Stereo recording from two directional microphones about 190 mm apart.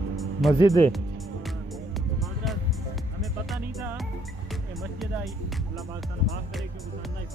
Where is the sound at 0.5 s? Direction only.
20° left (ahead or behind).